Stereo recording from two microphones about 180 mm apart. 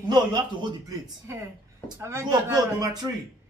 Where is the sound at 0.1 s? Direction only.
25° right (ahead or behind).